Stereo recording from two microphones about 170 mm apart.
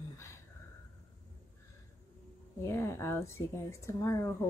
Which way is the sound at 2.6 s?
15° left (ahead or behind).